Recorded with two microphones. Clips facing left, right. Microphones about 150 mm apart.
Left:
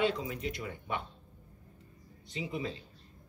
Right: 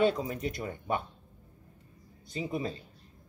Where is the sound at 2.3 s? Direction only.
40° right (ahead or behind).